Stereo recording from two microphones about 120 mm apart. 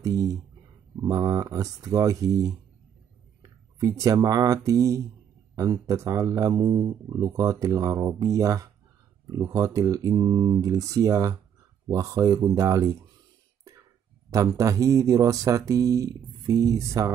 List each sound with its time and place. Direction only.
0.0 s speech: 30° right (ahead or behind)
3.8 s speech: 30° right (ahead or behind)
14.6 s speech: 25° right (ahead or behind)